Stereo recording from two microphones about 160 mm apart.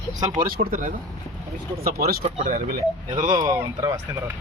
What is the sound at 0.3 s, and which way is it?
Speech, 65° right (ahead or behind).